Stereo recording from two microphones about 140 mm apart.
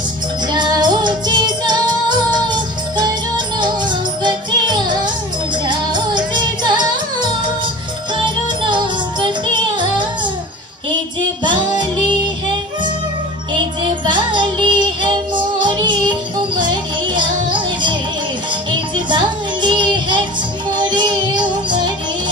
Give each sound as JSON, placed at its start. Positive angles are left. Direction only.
{"t": 0.5, "sound": "music", "side_deg": -30}
{"t": 11.4, "sound": "music", "side_deg": -35}
{"t": 14.0, "sound": "music", "side_deg": -35}